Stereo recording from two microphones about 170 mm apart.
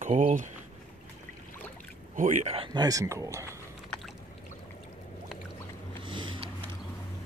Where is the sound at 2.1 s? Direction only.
50° right (ahead or behind).